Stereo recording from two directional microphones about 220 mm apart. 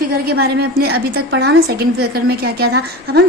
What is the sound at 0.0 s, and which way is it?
A woman's voice, 45° right (ahead or behind).